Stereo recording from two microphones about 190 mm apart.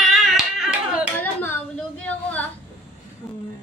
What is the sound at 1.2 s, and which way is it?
Hands, 10° left (ahead or behind).